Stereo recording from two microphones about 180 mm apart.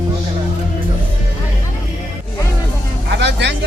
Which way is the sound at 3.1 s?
70° right (ahead or behind).